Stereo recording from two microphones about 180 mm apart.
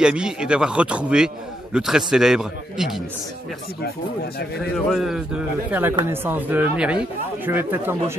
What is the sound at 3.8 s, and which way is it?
Speech, 60° left (ahead or behind).